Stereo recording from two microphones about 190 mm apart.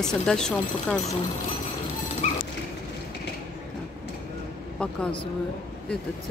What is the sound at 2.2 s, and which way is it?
Dog, 40° left (ahead or behind).